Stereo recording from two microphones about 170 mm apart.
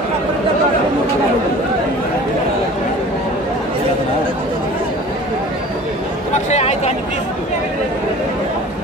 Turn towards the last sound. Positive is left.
turn(degrees=40)  # may be behind; listen again after turning